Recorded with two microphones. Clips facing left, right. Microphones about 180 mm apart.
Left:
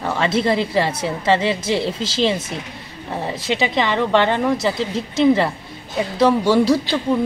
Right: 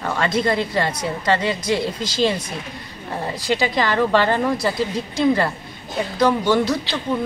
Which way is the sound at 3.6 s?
25° left (ahead or behind).